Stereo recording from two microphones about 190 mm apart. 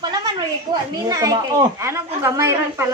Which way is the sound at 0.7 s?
20° right (ahead or behind).